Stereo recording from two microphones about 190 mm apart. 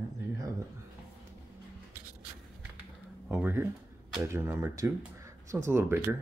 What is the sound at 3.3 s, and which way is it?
Speech, 10° right (ahead or behind).